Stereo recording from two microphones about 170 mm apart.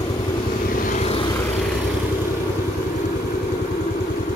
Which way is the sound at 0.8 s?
40° left (ahead or behind).